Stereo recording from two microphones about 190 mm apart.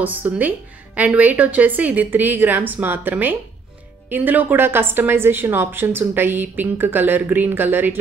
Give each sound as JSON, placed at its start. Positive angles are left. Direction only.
{"t": 0.0, "sound": "a woman's voice", "side_deg": -10}